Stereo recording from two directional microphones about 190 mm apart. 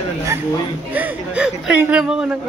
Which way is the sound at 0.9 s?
5° right (ahead or behind).